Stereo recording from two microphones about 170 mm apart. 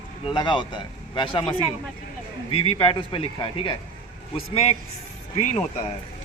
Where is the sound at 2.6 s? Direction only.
35° left (ahead or behind).